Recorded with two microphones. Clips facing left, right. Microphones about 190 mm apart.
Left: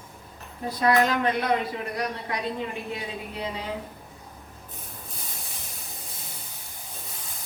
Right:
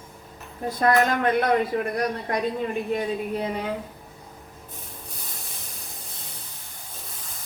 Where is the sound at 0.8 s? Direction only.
50° right (ahead or behind).